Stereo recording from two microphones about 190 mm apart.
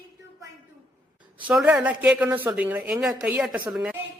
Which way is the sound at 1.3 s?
5° right (ahead or behind).